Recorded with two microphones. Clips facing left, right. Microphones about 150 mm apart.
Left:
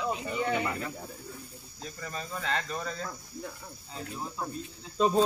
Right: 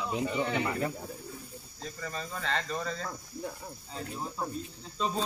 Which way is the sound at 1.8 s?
5° left (ahead or behind).